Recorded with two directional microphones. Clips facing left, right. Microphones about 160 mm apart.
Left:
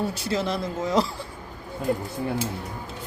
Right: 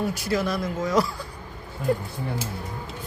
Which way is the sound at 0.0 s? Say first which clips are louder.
Right 1 dB; 30° left (ahead or behind).